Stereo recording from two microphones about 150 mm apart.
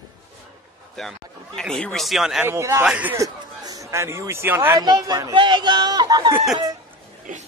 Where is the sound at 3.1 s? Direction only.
25° right (ahead or behind).